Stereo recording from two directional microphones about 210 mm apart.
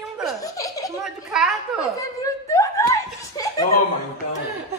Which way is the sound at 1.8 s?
15° left (ahead or behind).